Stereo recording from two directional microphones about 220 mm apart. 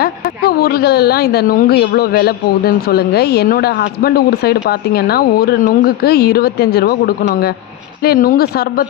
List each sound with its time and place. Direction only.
0.0 s a woman's voice: 45° left (ahead or behind)